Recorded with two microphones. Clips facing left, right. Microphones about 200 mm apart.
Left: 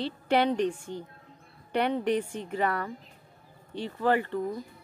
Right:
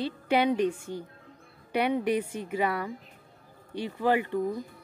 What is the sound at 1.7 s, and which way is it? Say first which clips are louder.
Speech: even; 10° right (ahead or behind).